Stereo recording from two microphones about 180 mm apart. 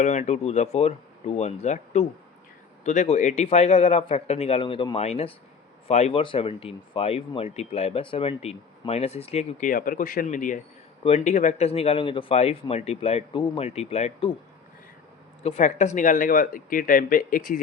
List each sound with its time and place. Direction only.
0.0 s speech: 40° left (ahead or behind)
15.5 s speech: 40° left (ahead or behind)